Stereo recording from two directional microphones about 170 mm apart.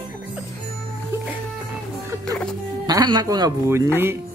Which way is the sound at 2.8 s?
25° right (ahead or behind).